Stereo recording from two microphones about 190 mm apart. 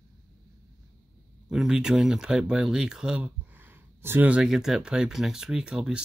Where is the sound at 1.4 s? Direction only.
Centre (ahead or behind).